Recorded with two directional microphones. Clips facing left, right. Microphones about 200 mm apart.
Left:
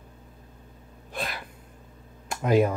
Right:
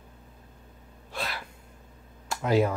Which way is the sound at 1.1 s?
15° left (ahead or behind).